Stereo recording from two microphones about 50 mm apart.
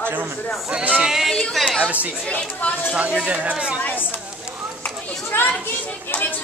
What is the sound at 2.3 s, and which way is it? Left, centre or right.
Speech, left.